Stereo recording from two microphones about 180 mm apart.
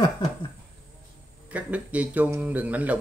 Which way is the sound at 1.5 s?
10° right (ahead or behind).